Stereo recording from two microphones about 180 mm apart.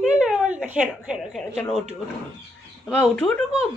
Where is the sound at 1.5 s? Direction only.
10° left (ahead or behind).